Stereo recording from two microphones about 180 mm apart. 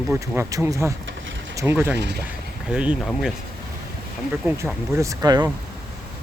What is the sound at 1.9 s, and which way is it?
Speech, 70° right (ahead or behind).